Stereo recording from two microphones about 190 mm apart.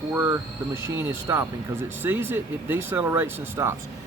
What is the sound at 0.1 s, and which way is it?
Speech, 10° right (ahead or behind).